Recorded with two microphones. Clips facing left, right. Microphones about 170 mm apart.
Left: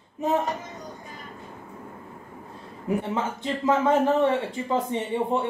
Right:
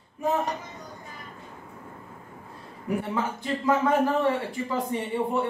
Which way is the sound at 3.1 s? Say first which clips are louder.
Left 1 dB; 20° left (ahead or behind).